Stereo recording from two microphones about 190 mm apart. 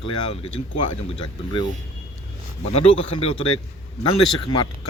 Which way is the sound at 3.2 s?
30° left (ahead or behind).